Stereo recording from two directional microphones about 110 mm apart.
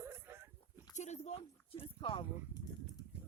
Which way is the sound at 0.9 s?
90° left.